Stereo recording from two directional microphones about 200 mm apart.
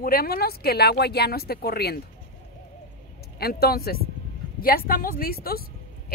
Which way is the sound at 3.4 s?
50° left (ahead or behind).